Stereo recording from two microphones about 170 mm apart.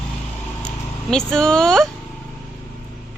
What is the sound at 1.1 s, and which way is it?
Speech, 5° left (ahead or behind).